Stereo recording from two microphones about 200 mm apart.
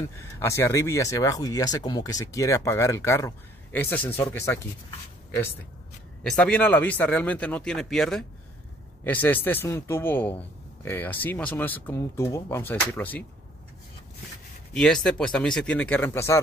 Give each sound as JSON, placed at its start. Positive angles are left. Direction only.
{"t": 0.4, "sound": "speech", "side_deg": 15}
{"t": 6.2, "sound": "speech", "side_deg": 5}
{"t": 14.7, "sound": "speech", "side_deg": 5}